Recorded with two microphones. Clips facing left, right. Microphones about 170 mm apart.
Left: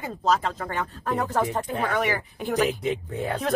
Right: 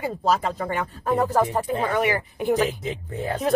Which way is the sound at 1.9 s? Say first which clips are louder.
Right 3 dB; 15° right (ahead or behind).